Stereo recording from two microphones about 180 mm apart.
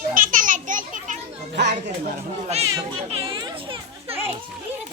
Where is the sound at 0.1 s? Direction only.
50° right (ahead or behind).